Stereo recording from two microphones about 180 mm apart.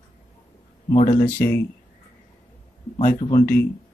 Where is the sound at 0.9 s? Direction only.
45° left (ahead or behind).